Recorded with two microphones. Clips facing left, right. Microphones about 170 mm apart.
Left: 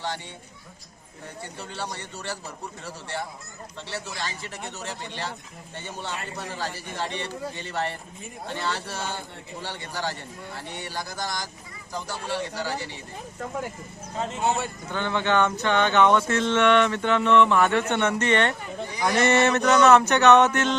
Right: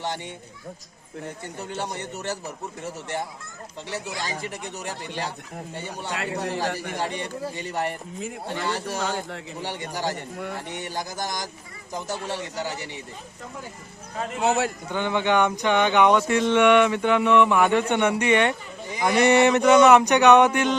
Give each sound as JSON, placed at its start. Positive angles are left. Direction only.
{"t": 1.5, "sound": "speech", "side_deg": -20}
{"t": 6.1, "sound": "a man's voice", "side_deg": -75}
{"t": 6.9, "sound": "speech", "side_deg": -15}
{"t": 14.4, "sound": "a man's voice", "side_deg": -90}
{"t": 14.8, "sound": "speech", "side_deg": -15}